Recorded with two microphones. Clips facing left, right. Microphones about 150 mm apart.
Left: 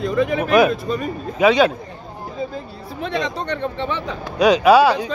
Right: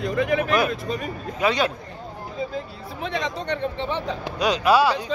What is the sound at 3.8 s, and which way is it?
Speech, 65° left (ahead or behind).